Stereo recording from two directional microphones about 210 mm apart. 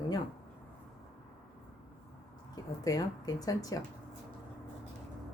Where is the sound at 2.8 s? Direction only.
20° left (ahead or behind).